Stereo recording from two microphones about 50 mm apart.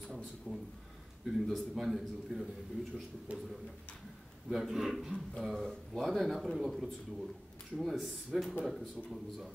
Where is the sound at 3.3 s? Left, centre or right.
Right.